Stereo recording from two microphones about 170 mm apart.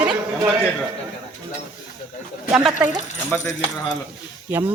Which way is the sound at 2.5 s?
5° right (ahead or behind).